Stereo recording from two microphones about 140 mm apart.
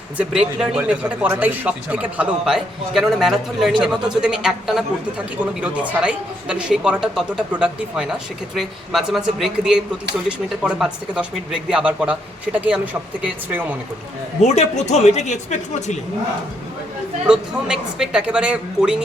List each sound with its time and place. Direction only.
0.2 s a man's voice: 5° right (ahead or behind)
14.4 s speech: 55° left (ahead or behind)
17.2 s a man's voice: 5° right (ahead or behind)